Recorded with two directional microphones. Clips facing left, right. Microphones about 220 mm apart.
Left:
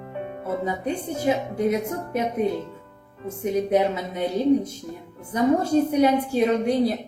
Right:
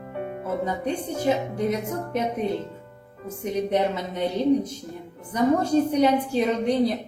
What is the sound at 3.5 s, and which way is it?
Speech, 10° left (ahead or behind).